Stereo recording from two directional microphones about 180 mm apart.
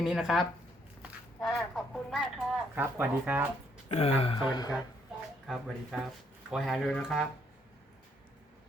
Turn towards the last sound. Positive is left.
turn(degrees=0)  # may be behind; listen again after turning